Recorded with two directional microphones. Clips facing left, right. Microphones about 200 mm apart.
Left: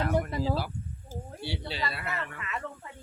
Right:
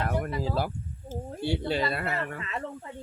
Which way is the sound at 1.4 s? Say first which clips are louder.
Right 8 dB; 50° right (ahead or behind).